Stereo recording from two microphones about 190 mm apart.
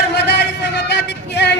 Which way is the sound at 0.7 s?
60° left (ahead or behind).